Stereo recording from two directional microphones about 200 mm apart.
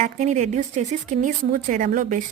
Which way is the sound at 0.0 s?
35° right (ahead or behind).